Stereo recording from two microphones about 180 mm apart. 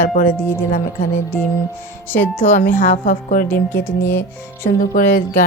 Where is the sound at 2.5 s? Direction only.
50° left (ahead or behind).